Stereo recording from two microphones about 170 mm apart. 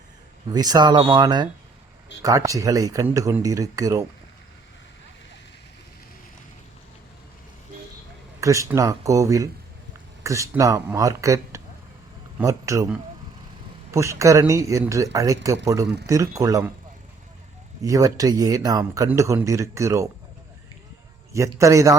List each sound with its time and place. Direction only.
0.4 s speech: 25° right (ahead or behind)
8.4 s speech: 20° right (ahead or behind)
13.9 s speech: 15° right (ahead or behind)
17.8 s speech: 20° right (ahead or behind)
21.3 s a man's voice: 15° right (ahead or behind)